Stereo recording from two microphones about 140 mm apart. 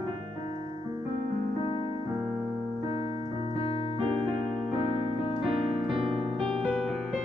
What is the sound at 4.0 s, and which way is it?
Keyboard, 40° right (ahead or behind).